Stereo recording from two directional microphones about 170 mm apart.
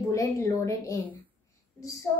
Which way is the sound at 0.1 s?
20° left (ahead or behind).